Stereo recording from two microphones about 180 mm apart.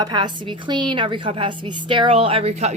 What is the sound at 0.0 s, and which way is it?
Speech, 25° right (ahead or behind).